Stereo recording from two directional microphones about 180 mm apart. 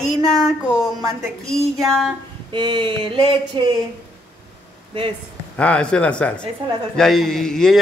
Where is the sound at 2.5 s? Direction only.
25° right (ahead or behind).